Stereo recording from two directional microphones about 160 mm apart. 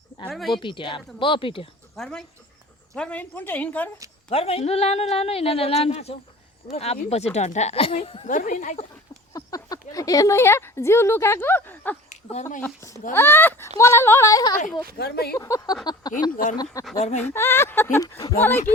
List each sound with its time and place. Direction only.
0.3 s speech: centre (ahead or behind)
0.5 s speech: 30° left (ahead or behind)
2.0 s speech: 5° left (ahead or behind)
4.3 s speech: 40° left (ahead or behind)
8.3 s speech: 50° left (ahead or behind)
9.3 s speech: 20° left (ahead or behind)
12.0 s a sound: 45° left (ahead or behind)
12.6 s speech: 15° left (ahead or behind)
14.9 s speech: 90° left
15.4 s a sound: 20° left (ahead or behind)
17.0 s speech: 45° left (ahead or behind)
17.2 s speech: 15° left (ahead or behind)